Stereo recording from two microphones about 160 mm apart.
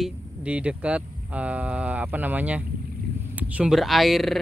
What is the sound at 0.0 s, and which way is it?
Speech, 5° right (ahead or behind).